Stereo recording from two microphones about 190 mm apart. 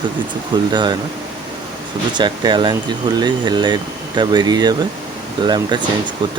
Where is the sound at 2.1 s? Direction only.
25° right (ahead or behind).